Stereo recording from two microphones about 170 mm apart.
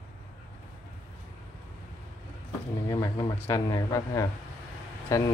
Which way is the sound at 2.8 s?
20° left (ahead or behind).